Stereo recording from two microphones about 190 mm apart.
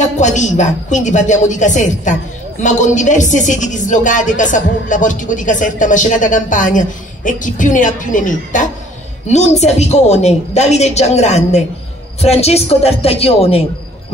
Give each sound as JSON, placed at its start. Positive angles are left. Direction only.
{"t": 0.0, "sound": "a woman's voice", "side_deg": 40}